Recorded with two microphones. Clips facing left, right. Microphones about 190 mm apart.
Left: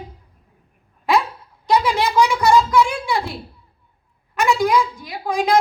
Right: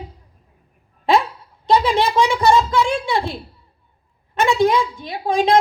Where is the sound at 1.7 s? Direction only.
25° right (ahead or behind).